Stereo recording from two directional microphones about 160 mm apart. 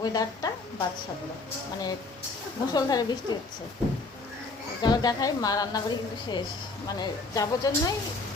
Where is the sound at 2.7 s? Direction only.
25° left (ahead or behind).